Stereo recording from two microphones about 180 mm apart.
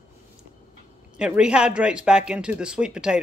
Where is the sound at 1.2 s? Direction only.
5° right (ahead or behind).